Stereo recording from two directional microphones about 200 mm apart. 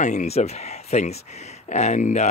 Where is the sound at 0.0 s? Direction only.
35° left (ahead or behind).